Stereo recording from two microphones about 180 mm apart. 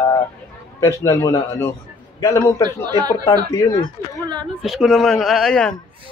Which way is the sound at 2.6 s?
20° right (ahead or behind).